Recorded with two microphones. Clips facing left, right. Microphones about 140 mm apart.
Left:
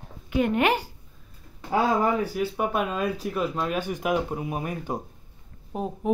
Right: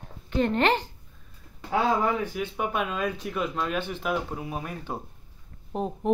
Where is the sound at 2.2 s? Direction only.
35° left (ahead or behind).